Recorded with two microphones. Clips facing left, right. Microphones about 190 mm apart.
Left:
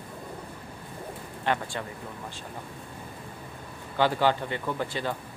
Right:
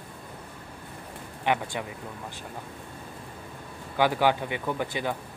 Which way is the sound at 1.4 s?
15° right (ahead or behind).